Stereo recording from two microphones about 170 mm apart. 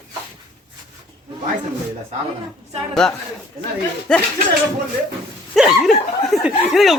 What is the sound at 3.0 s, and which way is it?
Speech, 5° left (ahead or behind).